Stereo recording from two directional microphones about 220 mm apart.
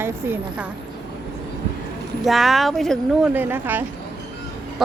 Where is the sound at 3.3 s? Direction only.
10° right (ahead or behind).